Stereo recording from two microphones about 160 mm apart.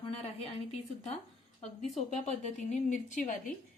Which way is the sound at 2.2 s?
45° left (ahead or behind).